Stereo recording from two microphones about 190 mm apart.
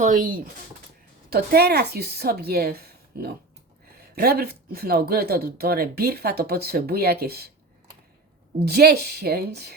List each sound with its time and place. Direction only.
0.0 s speech: 45° right (ahead or behind)
1.3 s speech: 55° right (ahead or behind)
8.5 s speech: 55° right (ahead or behind)